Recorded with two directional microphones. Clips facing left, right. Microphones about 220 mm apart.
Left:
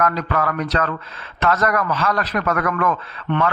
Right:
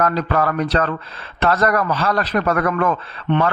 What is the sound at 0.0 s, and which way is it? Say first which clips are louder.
A man's voice: right 2 dB; 30° right (ahead or behind).